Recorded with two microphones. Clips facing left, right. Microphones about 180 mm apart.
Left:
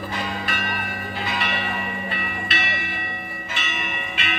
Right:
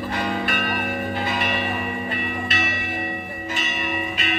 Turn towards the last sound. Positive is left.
turn(degrees=-40)  # may be behind; listen again after turning